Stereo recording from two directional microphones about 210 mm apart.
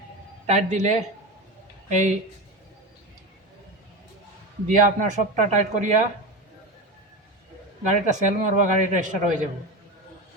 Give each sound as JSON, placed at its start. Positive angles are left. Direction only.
{"t": 0.4, "sound": "a man's voice", "side_deg": -35}
{"t": 4.7, "sound": "a man's voice", "side_deg": -35}
{"t": 7.9, "sound": "a man's voice", "side_deg": -35}